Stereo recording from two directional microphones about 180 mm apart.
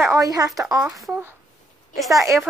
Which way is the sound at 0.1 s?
20° right (ahead or behind).